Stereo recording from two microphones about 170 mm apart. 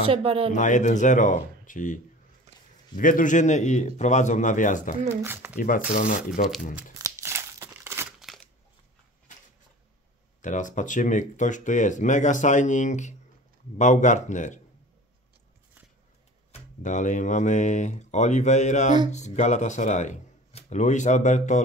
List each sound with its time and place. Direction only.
0.0 s speech: 35° right (ahead or behind)
0.5 s speech: 45° left (ahead or behind)
3.0 s speech: 50° left (ahead or behind)
5.2 s speech: 15° right (ahead or behind)
5.9 s speech: 50° left (ahead or behind)
7.0 s crumpling: 15° right (ahead or behind)
8.2 s crushing: centre (ahead or behind)
10.4 s speech: 45° left (ahead or behind)
16.8 s speech: 45° left (ahead or behind)